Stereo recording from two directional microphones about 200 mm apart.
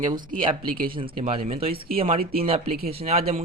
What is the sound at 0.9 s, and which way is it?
Speech, 25° right (ahead or behind).